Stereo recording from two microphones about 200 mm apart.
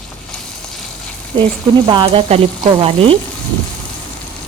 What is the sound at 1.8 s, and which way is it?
Frying, 25° right (ahead or behind).